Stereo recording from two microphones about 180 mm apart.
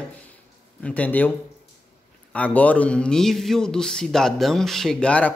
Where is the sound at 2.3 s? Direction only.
10° left (ahead or behind).